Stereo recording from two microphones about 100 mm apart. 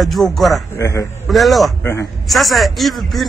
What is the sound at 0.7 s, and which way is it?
Speech, 30° left (ahead or behind).